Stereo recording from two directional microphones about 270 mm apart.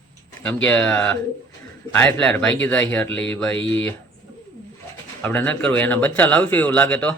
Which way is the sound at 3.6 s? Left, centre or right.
Left.